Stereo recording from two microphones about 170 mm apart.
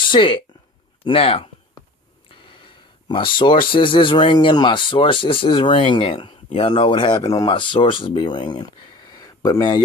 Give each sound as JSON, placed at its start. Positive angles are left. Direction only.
{"t": 0.1, "sound": "speech", "side_deg": 30}